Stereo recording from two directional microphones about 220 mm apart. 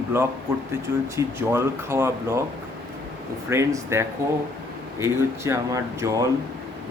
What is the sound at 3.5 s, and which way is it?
Speech, 15° right (ahead or behind).